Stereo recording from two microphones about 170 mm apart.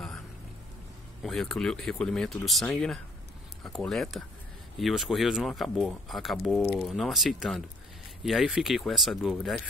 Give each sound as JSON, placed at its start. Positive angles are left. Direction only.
{"t": 1.2, "sound": "speech", "side_deg": 0}